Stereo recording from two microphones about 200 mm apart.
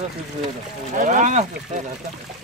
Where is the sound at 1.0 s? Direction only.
40° right (ahead or behind).